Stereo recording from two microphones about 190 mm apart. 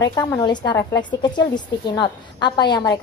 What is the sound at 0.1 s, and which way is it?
A woman's voice, 20° left (ahead or behind).